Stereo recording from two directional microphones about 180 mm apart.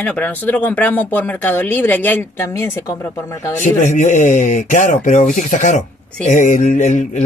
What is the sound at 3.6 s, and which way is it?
Speech, 45° left (ahead or behind).